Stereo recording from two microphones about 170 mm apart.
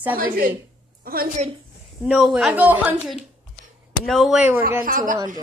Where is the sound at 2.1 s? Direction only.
Centre (ahead or behind).